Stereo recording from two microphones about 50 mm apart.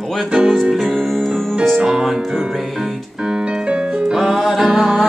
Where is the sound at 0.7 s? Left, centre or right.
Centre.